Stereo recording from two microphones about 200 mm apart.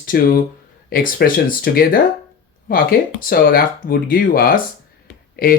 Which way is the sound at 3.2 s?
45° left (ahead or behind).